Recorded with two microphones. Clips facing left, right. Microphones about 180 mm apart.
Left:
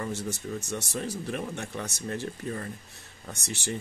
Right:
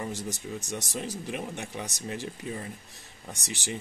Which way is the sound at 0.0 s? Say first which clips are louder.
Left 2 dB; 15° right (ahead or behind).